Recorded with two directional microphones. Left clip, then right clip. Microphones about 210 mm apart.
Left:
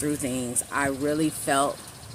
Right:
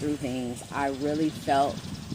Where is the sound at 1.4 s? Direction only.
25° left (ahead or behind).